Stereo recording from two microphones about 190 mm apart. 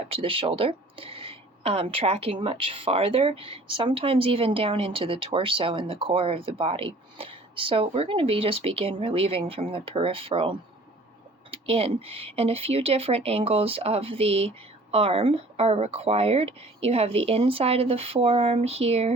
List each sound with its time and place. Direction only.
0.1 s speech: 30° right (ahead or behind)
11.5 s speech: 30° right (ahead or behind)